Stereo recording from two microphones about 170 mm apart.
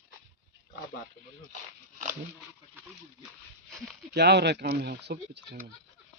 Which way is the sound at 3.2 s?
Centre (ahead or behind).